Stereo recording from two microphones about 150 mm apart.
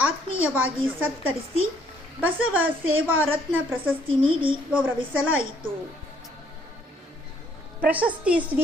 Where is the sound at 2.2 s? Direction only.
10° right (ahead or behind).